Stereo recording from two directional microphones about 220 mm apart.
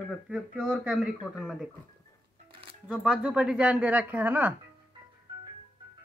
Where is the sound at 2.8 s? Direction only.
5° right (ahead or behind).